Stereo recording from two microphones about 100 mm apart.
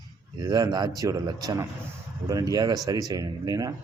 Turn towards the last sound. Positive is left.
turn(degrees=-40)  # may be behind; listen again after turning